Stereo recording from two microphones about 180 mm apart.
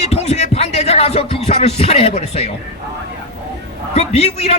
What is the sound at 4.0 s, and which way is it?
Speech, 35° left (ahead or behind).